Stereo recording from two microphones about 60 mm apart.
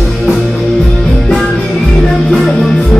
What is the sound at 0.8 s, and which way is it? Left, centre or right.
Music, centre.